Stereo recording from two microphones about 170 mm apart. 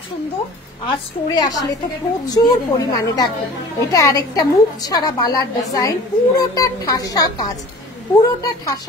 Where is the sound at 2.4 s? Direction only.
20° left (ahead or behind).